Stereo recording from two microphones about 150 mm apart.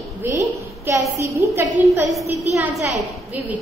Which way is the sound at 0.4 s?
20° right (ahead or behind).